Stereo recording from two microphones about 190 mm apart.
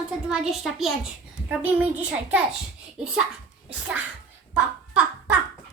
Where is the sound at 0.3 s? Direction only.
Centre (ahead or behind).